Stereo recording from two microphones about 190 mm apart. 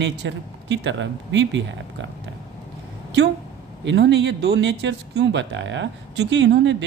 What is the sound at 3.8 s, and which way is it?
Speech, 70° right (ahead or behind).